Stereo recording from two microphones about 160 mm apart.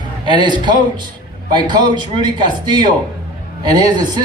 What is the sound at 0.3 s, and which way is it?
A man's voice, 30° right (ahead or behind).